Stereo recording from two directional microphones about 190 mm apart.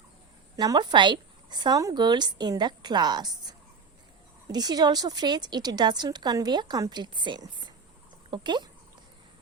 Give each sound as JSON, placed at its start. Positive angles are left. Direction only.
{"t": 0.5, "sound": "a woman's voice", "side_deg": -20}
{"t": 4.5, "sound": "a woman's voice", "side_deg": -20}